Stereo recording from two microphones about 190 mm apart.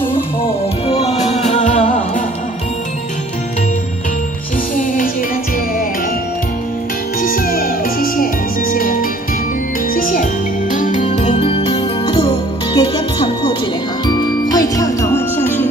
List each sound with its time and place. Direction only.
0.8 s music: 35° left (ahead or behind)
4.7 s music: 45° left (ahead or behind)
7.2 s music: 50° left (ahead or behind); by 15.6 s 10° left (ahead or behind)